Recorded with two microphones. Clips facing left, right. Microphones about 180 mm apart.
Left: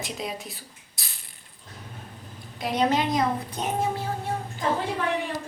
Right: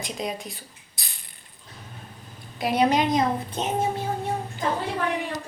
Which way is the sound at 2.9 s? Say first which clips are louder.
Right 2 dB; 20° right (ahead or behind).